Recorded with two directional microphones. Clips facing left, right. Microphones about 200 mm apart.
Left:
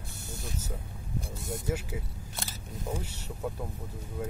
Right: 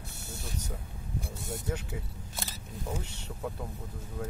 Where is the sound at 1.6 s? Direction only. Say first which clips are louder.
Left 4 dB; 5° left (ahead or behind).